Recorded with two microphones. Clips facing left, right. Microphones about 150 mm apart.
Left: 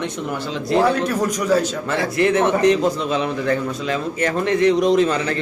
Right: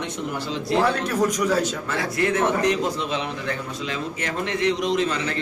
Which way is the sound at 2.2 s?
25° left (ahead or behind).